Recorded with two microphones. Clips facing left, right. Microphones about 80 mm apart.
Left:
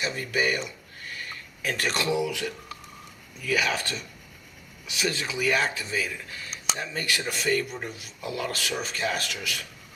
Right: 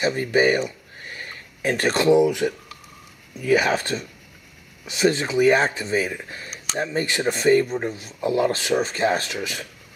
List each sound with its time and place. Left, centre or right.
0.0 s speech: right
0.9 s a sound: right
3.3 s speech: right